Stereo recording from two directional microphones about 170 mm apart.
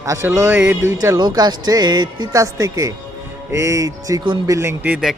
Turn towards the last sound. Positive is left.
turn(degrees=-5)  # may be behind; listen again after turning